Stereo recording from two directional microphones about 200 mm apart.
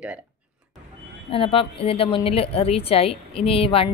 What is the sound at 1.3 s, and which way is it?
Speech, 25° left (ahead or behind).